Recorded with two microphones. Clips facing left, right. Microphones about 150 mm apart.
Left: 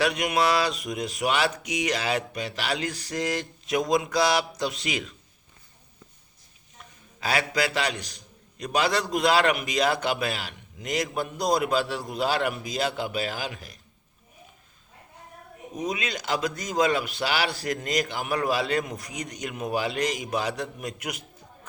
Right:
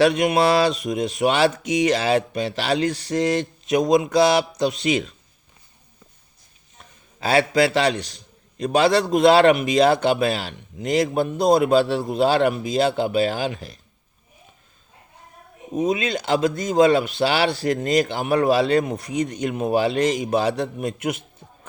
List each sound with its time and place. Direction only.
0.0 s a man's voice: 25° right (ahead or behind)
6.7 s a man's voice: 30° right (ahead or behind)
15.7 s a man's voice: 25° right (ahead or behind)